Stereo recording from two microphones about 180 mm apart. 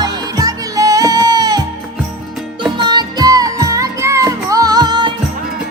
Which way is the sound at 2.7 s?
25° right (ahead or behind).